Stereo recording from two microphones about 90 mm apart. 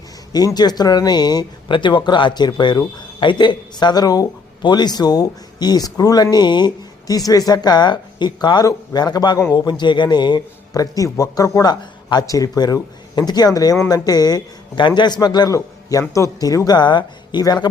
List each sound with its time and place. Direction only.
0.3 s a man's voice: 50° left (ahead or behind)
1.7 s a man's voice: 65° left (ahead or behind); by 6.2 s 45° left (ahead or behind)
6.3 s speech: 55° left (ahead or behind)
7.3 s a man's voice: 45° left (ahead or behind)
15.5 s a man's voice: 35° left (ahead or behind); by 17.7 s 50° left (ahead or behind)